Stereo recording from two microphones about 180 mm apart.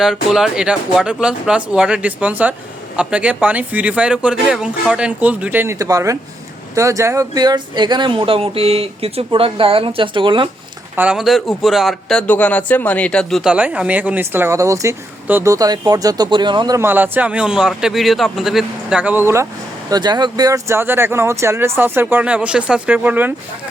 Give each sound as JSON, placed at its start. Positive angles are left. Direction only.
{"t": 0.0, "sound": "speech", "side_deg": 0}
{"t": 10.9, "sound": "a man's voice", "side_deg": -5}